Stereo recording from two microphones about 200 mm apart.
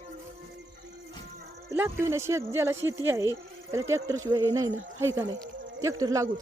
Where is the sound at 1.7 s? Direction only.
10° right (ahead or behind).